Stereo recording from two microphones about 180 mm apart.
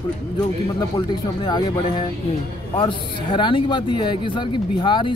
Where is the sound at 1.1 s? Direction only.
25° left (ahead or behind).